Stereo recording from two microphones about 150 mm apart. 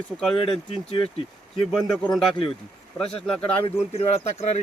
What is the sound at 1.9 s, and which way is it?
Speech, 5° left (ahead or behind).